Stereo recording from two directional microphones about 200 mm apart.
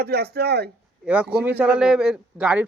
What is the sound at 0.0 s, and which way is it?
Speech, 50° right (ahead or behind).